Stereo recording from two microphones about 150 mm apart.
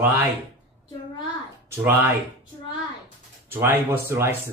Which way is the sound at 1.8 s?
10° right (ahead or behind).